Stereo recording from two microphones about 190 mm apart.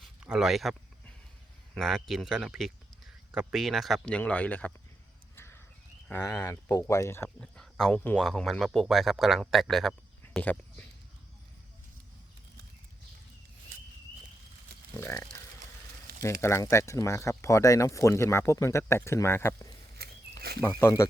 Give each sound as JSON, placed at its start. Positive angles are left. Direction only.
{"t": 0.0, "sound": "a sound", "side_deg": 0}
{"t": 1.7, "sound": "speech", "side_deg": 0}
{"t": 5.4, "sound": "horse", "side_deg": 10}
{"t": 6.1, "sound": "speech", "side_deg": 15}
{"t": 15.0, "sound": "speech", "side_deg": 15}
{"t": 20.0, "sound": "pig", "side_deg": -55}
{"t": 20.6, "sound": "speech", "side_deg": 15}